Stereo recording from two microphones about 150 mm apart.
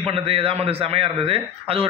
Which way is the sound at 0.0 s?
40° right (ahead or behind).